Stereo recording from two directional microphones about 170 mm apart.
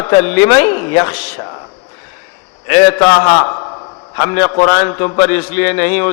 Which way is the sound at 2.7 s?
15° left (ahead or behind).